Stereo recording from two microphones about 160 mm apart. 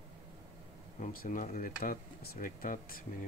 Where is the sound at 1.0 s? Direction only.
55° left (ahead or behind).